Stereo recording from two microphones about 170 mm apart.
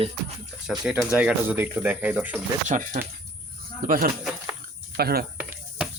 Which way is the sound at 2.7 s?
50° right (ahead or behind).